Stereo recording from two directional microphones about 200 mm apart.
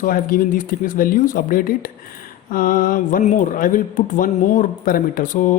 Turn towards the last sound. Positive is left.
turn(degrees=40)  # may be behind; listen again after turning